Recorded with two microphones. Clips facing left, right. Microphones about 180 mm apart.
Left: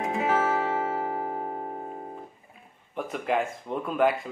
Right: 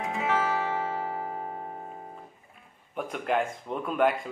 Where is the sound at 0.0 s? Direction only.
35° left (ahead or behind).